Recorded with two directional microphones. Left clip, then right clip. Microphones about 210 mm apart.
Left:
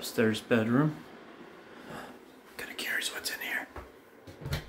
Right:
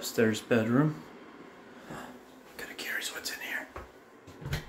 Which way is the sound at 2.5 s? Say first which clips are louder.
Left 2 dB; 15° left (ahead or behind).